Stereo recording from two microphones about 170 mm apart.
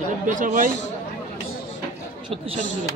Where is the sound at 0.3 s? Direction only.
50° right (ahead or behind).